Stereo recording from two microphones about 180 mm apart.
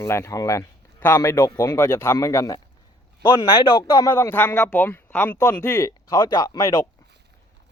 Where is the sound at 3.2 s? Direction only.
30° left (ahead or behind).